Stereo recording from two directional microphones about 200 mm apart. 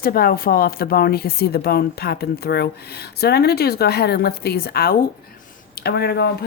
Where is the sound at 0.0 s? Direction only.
50° left (ahead or behind).